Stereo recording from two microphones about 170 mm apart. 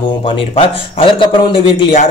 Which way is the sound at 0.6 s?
30° left (ahead or behind).